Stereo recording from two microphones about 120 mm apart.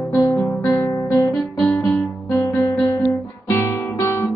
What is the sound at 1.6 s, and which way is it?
Guitar, centre (ahead or behind).